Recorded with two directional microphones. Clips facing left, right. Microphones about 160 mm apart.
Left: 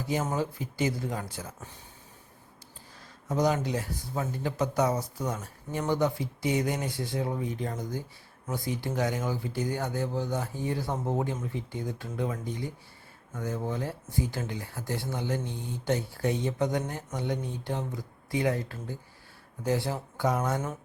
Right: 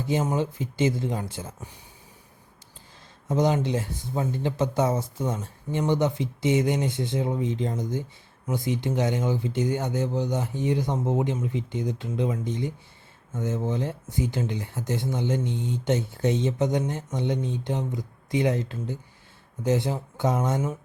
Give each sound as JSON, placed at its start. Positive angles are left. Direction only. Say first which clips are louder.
{"t": 0.0, "sound": "speech", "louder": "right 4 dB", "side_deg": -25}
{"t": 3.2, "sound": "speech", "louder": "right 3 dB", "side_deg": -20}